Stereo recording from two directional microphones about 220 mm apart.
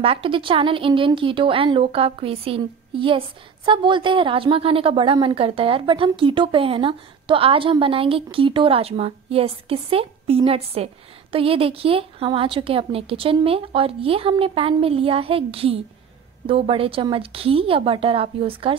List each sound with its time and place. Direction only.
0.0 s speech: 25° right (ahead or behind)